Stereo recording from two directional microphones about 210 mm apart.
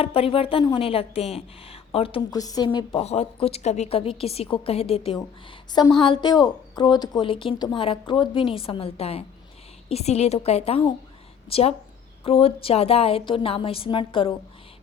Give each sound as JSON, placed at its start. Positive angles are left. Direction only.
{"t": 0.0, "sound": "a woman's voice", "side_deg": 25}
{"t": 3.0, "sound": "a woman's voice", "side_deg": 30}